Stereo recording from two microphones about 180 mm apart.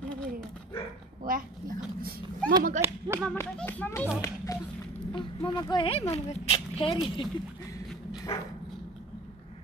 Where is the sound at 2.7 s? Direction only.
15° right (ahead or behind).